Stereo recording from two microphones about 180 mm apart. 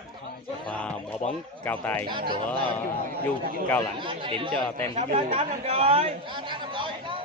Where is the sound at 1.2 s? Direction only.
40° left (ahead or behind).